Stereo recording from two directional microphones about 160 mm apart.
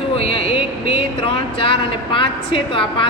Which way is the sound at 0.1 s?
35° left (ahead or behind).